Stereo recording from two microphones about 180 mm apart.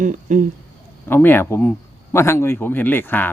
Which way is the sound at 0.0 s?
45° right (ahead or behind).